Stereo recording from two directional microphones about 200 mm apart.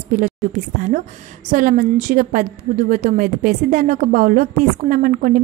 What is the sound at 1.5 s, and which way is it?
A woman's voice, 40° right (ahead or behind).